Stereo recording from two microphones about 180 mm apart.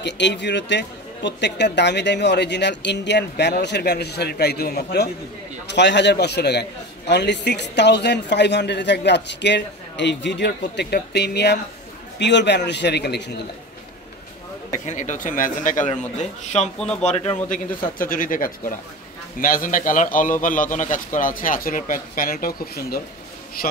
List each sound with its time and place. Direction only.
0.0 s a man's voice: 75° left (ahead or behind); by 5.1 s 60° left (ahead or behind)
5.7 s a man's voice: 75° left (ahead or behind)
14.7 s a man's voice: 40° left (ahead or behind)
16.7 s speech: 5° left (ahead or behind)
17.0 s speech: 35° left (ahead or behind)
17.5 s a man's voice: 50° left (ahead or behind)